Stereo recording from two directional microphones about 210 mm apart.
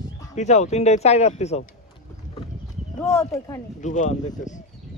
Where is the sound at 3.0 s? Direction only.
15° left (ahead or behind).